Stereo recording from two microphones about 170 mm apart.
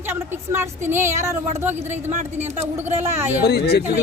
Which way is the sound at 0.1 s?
15° right (ahead or behind).